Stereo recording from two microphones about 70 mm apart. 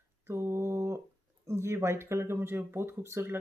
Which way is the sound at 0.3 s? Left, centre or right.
Right.